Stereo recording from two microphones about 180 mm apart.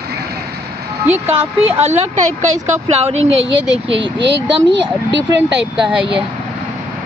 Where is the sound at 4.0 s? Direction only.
80° right.